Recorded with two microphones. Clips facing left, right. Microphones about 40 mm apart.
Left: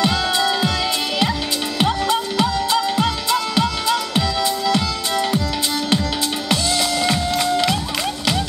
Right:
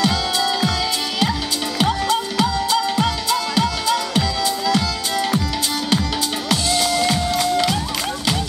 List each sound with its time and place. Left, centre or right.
0.0 s music: centre
1.8 s music: centre
6.5 s music: centre